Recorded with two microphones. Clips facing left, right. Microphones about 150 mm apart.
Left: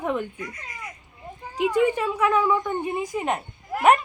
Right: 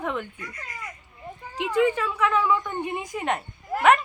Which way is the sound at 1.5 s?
15° left (ahead or behind).